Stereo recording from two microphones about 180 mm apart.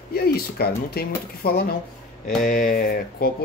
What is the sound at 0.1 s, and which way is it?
Speech, 60° left (ahead or behind).